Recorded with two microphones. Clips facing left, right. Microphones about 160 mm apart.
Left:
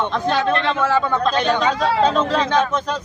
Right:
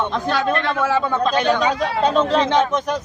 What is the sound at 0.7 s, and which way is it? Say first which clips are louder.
Speech: left 1 dB; 10° right (ahead or behind).